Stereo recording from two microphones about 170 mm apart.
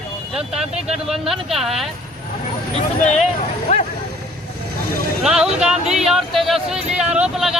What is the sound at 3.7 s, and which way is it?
Vehicle, 35° left (ahead or behind).